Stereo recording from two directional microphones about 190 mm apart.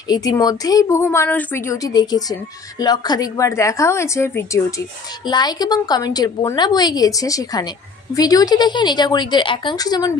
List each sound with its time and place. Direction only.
0.1 s a woman's voice: 20° left (ahead or behind)